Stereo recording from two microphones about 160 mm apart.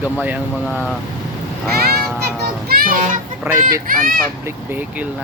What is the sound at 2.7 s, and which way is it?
Children playing, 60° right (ahead or behind).